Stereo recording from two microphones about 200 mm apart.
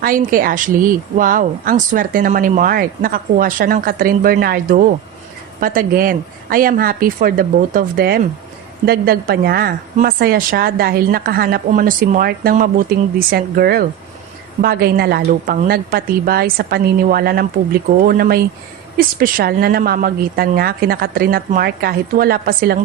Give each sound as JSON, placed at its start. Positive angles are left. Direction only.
{"t": 0.0, "sound": "speech", "side_deg": -45}